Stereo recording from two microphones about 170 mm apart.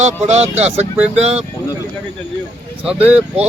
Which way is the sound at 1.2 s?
40° right (ahead or behind).